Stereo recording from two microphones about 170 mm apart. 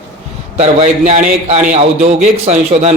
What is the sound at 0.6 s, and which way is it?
A man's voice, 40° right (ahead or behind).